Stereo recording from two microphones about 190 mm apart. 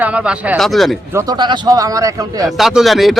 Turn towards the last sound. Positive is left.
turn(degrees=0)  # may be behind; listen again after turning